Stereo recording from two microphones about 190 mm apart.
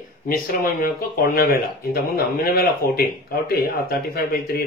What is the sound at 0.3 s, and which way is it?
Speech, 50° left (ahead or behind).